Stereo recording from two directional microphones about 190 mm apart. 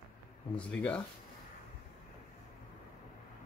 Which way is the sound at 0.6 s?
5° left (ahead or behind).